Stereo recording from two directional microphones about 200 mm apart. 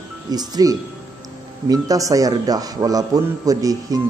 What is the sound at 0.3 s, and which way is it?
A man's voice, 20° right (ahead or behind).